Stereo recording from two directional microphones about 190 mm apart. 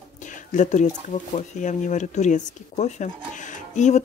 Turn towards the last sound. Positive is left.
turn(degrees=40)  # may be behind; listen again after turning